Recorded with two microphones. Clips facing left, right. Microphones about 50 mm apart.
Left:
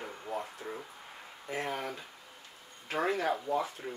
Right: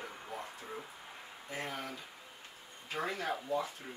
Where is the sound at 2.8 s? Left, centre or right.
Left.